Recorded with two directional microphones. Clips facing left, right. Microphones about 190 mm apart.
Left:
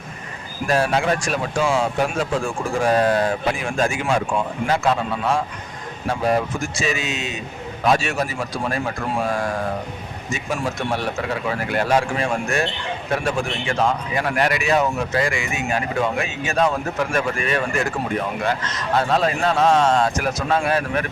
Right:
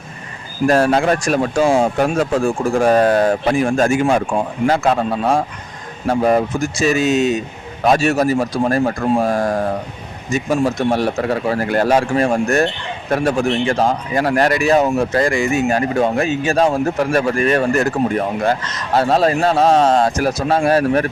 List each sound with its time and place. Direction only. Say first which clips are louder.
0.7 s speech: right 5 dB; 45° right (ahead or behind)
18.9 s speech: right 6 dB; 35° right (ahead or behind)